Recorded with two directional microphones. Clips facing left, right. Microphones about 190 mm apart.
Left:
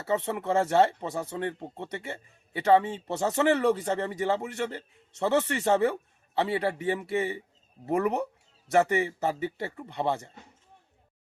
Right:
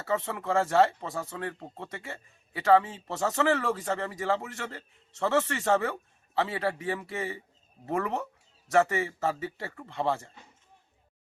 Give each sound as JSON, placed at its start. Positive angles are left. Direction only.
{"t": 0.0, "sound": "speech", "side_deg": 20}